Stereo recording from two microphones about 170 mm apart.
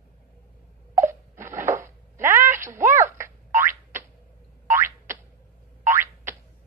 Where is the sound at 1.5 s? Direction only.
15° right (ahead or behind).